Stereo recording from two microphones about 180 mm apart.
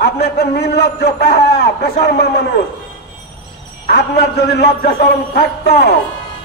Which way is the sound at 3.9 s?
65° left (ahead or behind).